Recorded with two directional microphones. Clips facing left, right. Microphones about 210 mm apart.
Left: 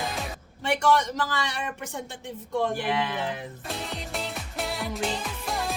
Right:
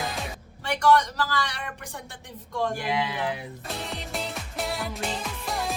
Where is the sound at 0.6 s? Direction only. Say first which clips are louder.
Right 1 dB; 25° left (ahead or behind).